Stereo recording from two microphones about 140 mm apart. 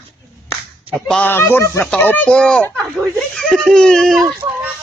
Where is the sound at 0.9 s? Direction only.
5° left (ahead or behind).